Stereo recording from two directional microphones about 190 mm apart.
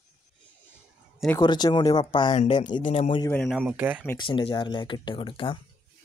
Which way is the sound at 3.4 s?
5° right (ahead or behind).